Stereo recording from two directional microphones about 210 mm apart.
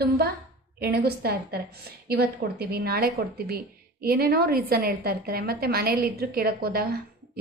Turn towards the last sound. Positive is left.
turn(degrees=-45)  # may be behind; listen again after turning